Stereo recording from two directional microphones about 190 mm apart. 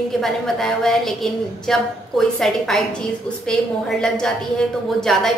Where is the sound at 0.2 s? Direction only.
Centre (ahead or behind).